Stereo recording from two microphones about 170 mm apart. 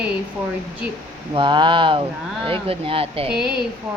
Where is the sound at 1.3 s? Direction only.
30° right (ahead or behind).